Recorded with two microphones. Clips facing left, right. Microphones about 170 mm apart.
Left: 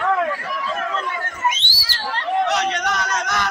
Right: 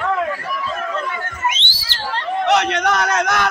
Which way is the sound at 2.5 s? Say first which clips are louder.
Right 5 dB; 60° right (ahead or behind).